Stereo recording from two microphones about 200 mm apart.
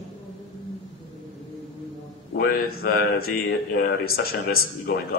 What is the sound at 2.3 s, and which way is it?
A man's voice, 50° left (ahead or behind).